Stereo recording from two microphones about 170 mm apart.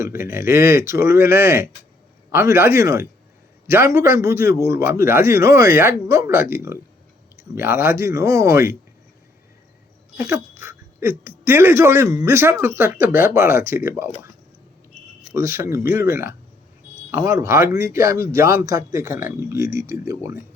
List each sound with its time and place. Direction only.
0.0 s speech: 15° right (ahead or behind)
10.2 s speech: 10° right (ahead or behind)
15.3 s speech: 15° right (ahead or behind)